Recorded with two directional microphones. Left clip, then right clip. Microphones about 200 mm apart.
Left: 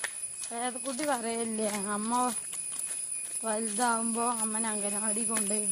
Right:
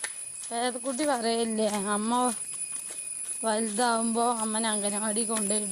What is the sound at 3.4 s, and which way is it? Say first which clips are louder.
Speech: right 4 dB; 50° right (ahead or behind).